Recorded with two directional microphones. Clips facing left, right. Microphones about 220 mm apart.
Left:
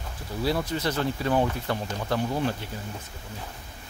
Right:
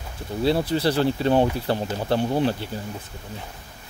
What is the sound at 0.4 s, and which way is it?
Speech, 30° right (ahead or behind).